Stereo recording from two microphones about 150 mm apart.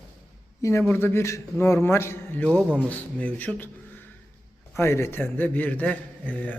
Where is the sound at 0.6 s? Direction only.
15° left (ahead or behind).